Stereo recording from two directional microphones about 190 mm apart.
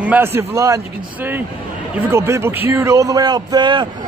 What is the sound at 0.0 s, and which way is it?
Speech, 10° right (ahead or behind).